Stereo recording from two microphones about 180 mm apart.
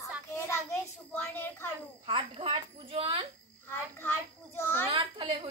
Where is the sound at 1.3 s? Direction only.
10° left (ahead or behind).